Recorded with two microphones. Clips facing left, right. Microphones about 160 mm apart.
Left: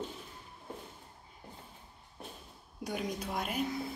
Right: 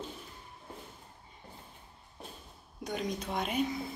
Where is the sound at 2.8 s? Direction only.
10° left (ahead or behind).